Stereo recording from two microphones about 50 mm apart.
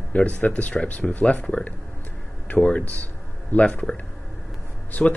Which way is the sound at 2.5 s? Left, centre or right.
Left.